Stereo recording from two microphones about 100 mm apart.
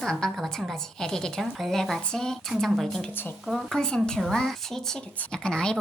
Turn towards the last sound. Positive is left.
turn(degrees=10)  # may be behind; listen again after turning